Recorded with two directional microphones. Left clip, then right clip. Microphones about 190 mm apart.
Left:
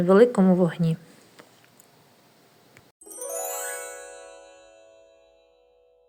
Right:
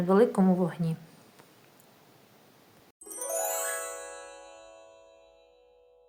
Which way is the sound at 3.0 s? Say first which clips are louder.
Even; centre (ahead or behind).